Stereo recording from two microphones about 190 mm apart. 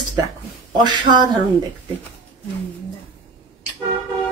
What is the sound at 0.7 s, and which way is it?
Speech, 25° right (ahead or behind).